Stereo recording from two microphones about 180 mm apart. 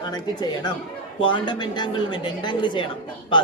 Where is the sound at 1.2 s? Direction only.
25° left (ahead or behind).